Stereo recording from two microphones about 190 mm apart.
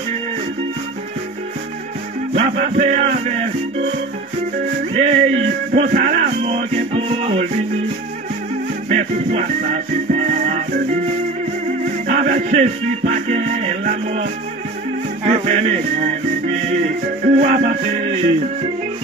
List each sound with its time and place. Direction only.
2.3 s music: 35° right (ahead or behind)
4.9 s music: 35° right (ahead or behind)
8.8 s music: 40° right (ahead or behind)
12.1 s music: 40° right (ahead or behind)